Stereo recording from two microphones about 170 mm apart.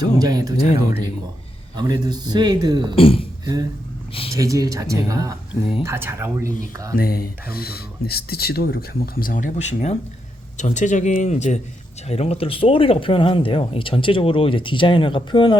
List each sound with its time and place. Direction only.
0.0 s a man's voice: 25° right (ahead or behind)
1.7 s a man's voice: 25° right (ahead or behind)
2.9 s speech: 30° left (ahead or behind)
3.4 s a man's voice: 20° right (ahead or behind)
6.9 s speech: 60° left (ahead or behind); by 15.5 s 30° left (ahead or behind)